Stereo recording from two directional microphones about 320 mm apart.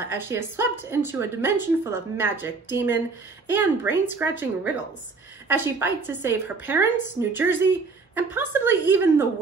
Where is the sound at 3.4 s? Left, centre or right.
Centre.